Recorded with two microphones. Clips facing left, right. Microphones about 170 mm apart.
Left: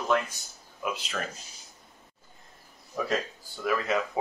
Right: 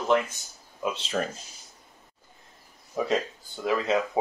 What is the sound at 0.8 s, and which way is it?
Speech, 25° right (ahead or behind).